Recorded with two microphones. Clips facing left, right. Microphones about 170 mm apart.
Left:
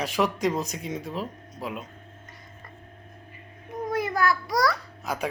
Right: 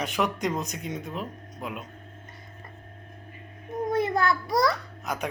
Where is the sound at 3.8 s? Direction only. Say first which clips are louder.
Right 1 dB; 25° right (ahead or behind).